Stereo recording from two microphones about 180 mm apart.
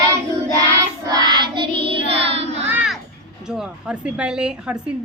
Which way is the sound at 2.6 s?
10° right (ahead or behind).